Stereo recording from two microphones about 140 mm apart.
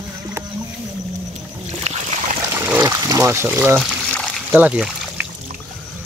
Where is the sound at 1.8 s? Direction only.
55° right (ahead or behind).